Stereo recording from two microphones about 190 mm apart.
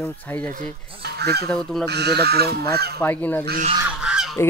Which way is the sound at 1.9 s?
60° right (ahead or behind).